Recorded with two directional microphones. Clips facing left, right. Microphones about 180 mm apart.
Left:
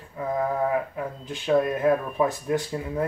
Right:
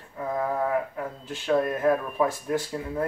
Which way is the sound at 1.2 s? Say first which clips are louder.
Left 2 dB; 15° left (ahead or behind).